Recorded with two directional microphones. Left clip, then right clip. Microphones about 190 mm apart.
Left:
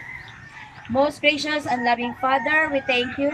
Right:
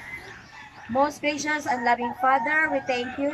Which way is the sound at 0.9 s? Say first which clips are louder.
Left 4 dB; 20° left (ahead or behind).